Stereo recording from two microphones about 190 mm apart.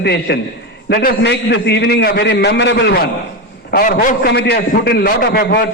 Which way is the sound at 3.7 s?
50° left (ahead or behind).